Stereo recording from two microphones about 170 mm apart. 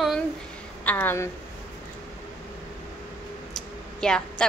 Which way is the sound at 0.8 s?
10° left (ahead or behind).